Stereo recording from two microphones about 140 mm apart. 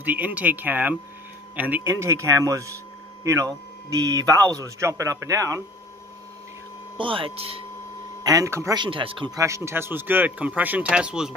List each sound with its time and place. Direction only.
0.0 s speech: 10° right (ahead or behind)
7.0 s speech: 40° right (ahead or behind)
8.2 s speech: 25° right (ahead or behind)
8.7 s speech: 35° right (ahead or behind)
9.3 s speech: 20° right (ahead or behind); by 11.3 s 5° right (ahead or behind)